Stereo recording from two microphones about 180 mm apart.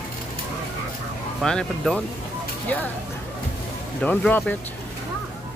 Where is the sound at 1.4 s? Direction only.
5° left (ahead or behind).